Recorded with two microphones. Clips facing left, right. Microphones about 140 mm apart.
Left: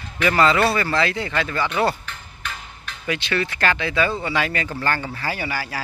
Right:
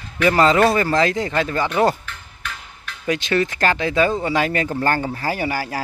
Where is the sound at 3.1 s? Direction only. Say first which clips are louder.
Right 4 dB; 40° right (ahead or behind).